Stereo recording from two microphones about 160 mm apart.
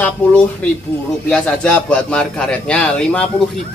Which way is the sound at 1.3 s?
5° left (ahead or behind).